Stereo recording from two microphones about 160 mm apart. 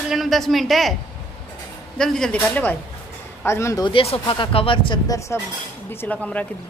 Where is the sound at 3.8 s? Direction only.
35° left (ahead or behind).